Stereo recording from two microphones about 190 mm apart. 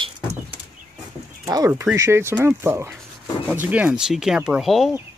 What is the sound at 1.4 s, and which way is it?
Speech, 15° right (ahead or behind).